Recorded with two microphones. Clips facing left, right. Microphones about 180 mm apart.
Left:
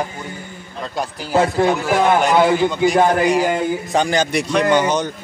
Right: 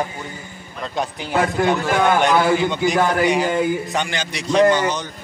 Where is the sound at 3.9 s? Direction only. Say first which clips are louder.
Left 7 dB; 40° left (ahead or behind); by 5.0 s 55° left (ahead or behind).